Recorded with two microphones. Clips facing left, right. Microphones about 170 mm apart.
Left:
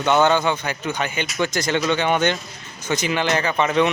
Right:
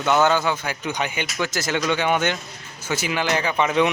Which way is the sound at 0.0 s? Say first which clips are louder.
Left 2 dB; 5° right (ahead or behind).